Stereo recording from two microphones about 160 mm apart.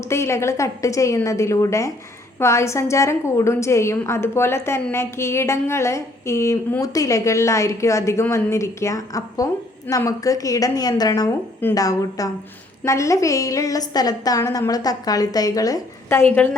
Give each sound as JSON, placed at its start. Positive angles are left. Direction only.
{"t": 0.0, "sound": "a woman's voice", "side_deg": 15}